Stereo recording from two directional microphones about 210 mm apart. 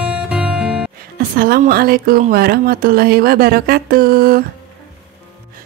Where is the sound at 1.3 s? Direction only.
40° right (ahead or behind).